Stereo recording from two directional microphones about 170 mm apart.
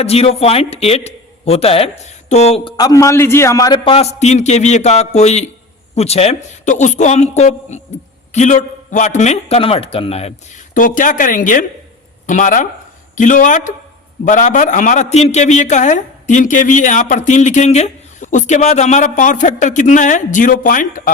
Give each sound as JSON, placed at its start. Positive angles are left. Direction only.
{"t": 0.0, "sound": "a man's voice", "side_deg": 35}
{"t": 2.7, "sound": "a man's voice", "side_deg": 20}
{"t": 10.8, "sound": "a man's voice", "side_deg": 50}